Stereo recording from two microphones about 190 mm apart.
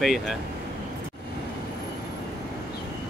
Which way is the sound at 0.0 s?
Centre (ahead or behind).